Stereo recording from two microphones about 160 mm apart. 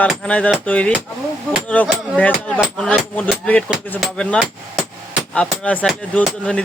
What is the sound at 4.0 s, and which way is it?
Speech, centre (ahead or behind).